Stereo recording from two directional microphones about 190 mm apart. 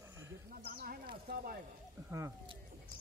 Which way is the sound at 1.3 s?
55° right (ahead or behind).